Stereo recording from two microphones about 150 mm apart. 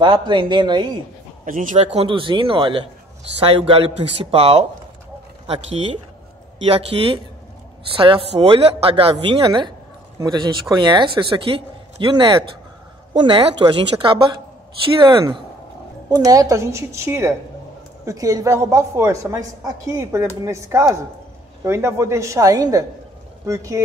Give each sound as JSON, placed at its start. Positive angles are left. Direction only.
{"t": 0.0, "sound": "a man's voice", "side_deg": -30}
{"t": 1.4, "sound": "a man's voice", "side_deg": -60}